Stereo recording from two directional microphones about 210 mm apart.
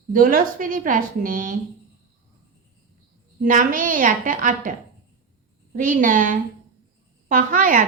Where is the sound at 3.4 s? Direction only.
40° right (ahead or behind).